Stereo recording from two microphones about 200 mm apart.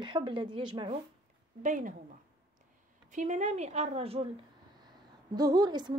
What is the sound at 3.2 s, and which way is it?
Speech, 35° right (ahead or behind).